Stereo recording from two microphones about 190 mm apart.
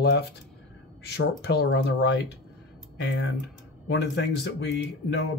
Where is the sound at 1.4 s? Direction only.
60° left (ahead or behind).